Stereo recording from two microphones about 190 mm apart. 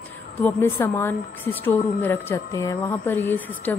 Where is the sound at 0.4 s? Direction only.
10° left (ahead or behind).